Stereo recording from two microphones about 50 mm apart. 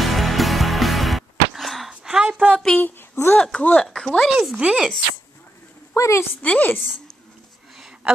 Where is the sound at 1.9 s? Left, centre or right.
Centre.